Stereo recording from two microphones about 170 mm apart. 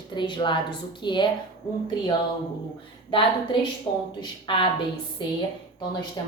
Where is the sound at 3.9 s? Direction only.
30° left (ahead or behind).